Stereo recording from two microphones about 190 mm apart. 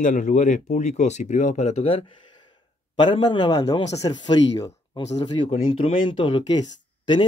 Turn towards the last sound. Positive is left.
turn(degrees=25)  # may be behind; listen again after turning